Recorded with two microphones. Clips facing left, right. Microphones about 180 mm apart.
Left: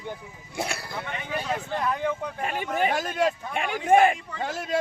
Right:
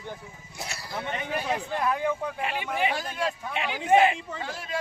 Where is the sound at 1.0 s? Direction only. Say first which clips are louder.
Right 3 dB; 15° right (ahead or behind).